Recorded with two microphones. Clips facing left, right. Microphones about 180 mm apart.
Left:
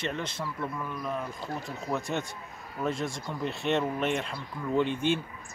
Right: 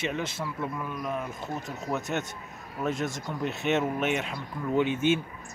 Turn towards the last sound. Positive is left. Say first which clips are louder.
# right 2 dB
turn(degrees=-5)  # may be behind; listen again after turning